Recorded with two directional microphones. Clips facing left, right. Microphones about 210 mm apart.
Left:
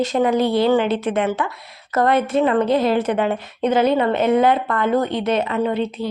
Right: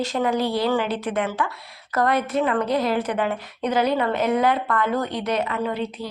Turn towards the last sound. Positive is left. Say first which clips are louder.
# left 5 dB
turn(degrees=25)  # may be behind; listen again after turning